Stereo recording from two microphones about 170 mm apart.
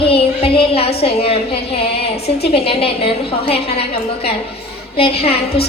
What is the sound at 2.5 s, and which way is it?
A woman's voice, 35° left (ahead or behind).